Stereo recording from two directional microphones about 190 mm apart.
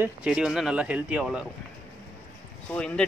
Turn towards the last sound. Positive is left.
turn(degrees=5)  # may be behind; listen again after turning